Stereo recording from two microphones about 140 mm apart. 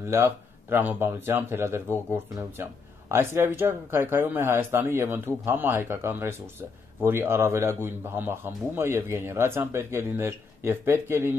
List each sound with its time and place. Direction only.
0.1 s speech: 15° right (ahead or behind)